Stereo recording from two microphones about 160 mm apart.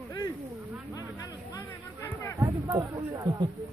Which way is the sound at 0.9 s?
20° left (ahead or behind).